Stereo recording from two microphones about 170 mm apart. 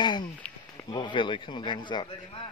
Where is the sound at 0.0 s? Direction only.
25° left (ahead or behind).